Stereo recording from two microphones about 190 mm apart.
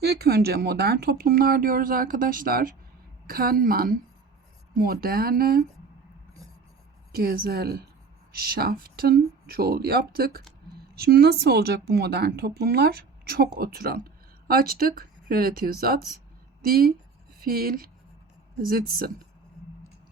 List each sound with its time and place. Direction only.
0.0 s speech: 55° right (ahead or behind)
7.1 s speech: 55° right (ahead or behind)